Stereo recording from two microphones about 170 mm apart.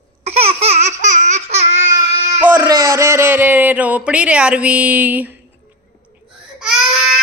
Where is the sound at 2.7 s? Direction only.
15° right (ahead or behind).